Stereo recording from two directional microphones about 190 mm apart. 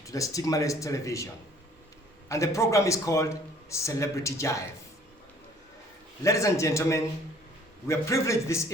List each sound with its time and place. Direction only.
0.0 s a man's voice: 15° left (ahead or behind)
2.3 s a man's voice: 15° left (ahead or behind)
6.2 s a man's voice: 15° left (ahead or behind)